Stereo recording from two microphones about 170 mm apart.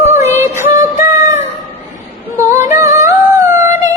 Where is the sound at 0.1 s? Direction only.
15° right (ahead or behind).